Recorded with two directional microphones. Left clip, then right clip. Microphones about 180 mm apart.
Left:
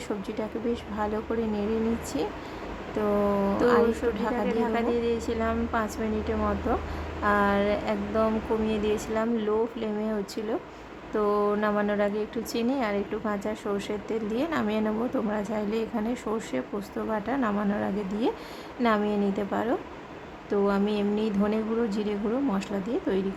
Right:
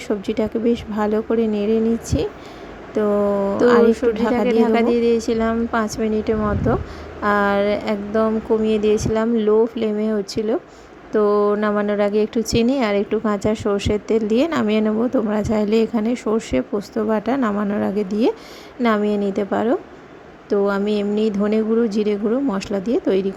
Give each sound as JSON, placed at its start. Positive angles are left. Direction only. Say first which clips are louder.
{"t": 0.3, "sound": "speech", "louder": "right 12 dB", "side_deg": -30}
{"t": 3.0, "sound": "speech", "louder": "right 8 dB", "side_deg": -25}